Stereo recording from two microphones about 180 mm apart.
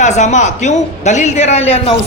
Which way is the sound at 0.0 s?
40° left (ahead or behind).